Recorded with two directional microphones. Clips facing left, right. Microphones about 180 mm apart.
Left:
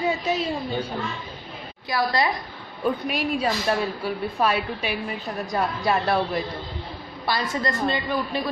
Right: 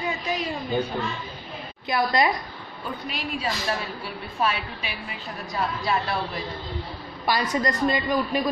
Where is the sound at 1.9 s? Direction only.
20° right (ahead or behind).